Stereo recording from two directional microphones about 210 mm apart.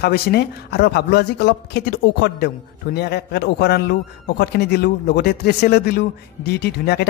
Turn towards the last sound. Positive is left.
turn(degrees=50)  # may be behind; listen again after turning